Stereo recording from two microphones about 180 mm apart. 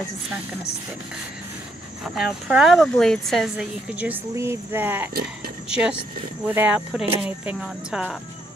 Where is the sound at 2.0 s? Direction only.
Centre (ahead or behind).